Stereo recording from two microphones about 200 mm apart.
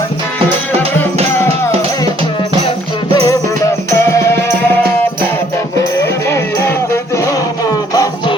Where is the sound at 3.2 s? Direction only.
15° left (ahead or behind).